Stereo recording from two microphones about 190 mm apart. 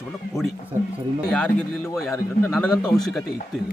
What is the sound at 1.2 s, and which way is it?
A man's voice, 5° left (ahead or behind).